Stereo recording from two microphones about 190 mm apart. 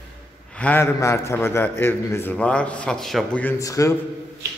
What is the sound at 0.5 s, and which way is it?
A man's voice, 5° left (ahead or behind).